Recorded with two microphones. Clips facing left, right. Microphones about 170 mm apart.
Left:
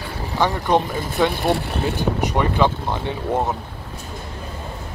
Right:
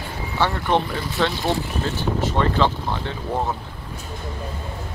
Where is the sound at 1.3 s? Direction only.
55° left (ahead or behind).